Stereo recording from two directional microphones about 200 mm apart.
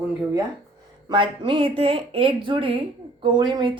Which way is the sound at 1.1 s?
25° right (ahead or behind).